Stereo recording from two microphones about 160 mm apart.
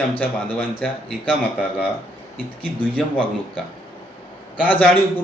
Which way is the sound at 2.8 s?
10° left (ahead or behind).